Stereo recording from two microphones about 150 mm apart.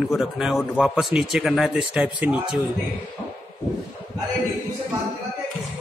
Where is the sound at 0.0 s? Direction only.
Centre (ahead or behind).